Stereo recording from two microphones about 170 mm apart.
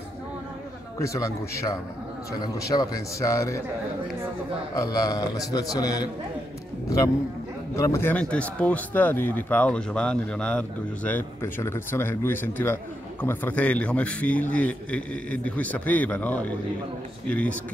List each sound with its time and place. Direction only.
0.9 s a man's voice: 20° left (ahead or behind)
4.7 s a man's voice: 20° left (ahead or behind)
7.7 s a man's voice: 15° left (ahead or behind)